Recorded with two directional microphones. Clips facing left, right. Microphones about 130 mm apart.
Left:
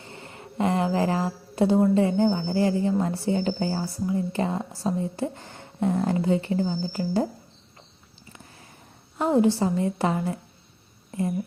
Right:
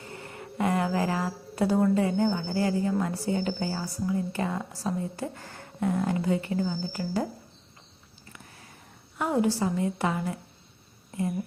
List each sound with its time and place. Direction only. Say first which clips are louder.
0.0 s speech: right 1 dB; 25° left (ahead or behind)
9.1 s speech: left 5 dB; 25° left (ahead or behind)